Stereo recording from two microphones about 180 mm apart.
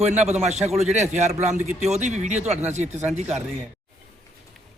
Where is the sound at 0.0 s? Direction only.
40° right (ahead or behind).